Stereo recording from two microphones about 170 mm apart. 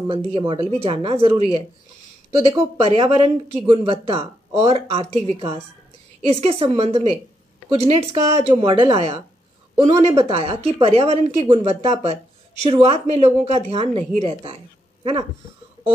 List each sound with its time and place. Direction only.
0.1 s speech: 30° right (ahead or behind)
2.8 s speech: 35° right (ahead or behind)